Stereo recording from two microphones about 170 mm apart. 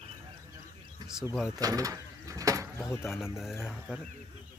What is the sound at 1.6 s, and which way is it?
Sliding door, 20° right (ahead or behind).